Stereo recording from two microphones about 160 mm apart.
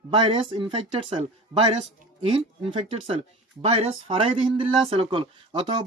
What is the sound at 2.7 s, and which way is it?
Speech, 35° right (ahead or behind).